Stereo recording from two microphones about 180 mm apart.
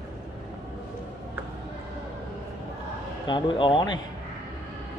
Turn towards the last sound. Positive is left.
turn(degrees=25)  # may be behind; listen again after turning